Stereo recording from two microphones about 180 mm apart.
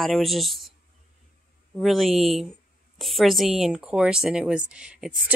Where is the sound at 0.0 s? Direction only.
Centre (ahead or behind).